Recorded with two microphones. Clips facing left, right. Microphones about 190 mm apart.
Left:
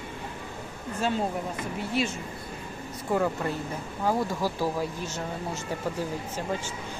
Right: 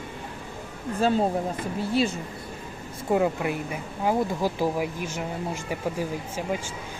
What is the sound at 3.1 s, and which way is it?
Speech, 15° right (ahead or behind).